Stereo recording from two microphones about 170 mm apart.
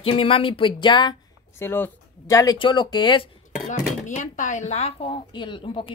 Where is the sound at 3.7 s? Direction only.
45° left (ahead or behind).